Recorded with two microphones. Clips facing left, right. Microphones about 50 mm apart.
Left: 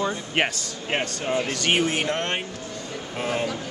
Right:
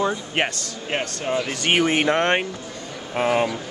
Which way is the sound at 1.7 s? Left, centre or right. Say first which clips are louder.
Right 5 dB; right.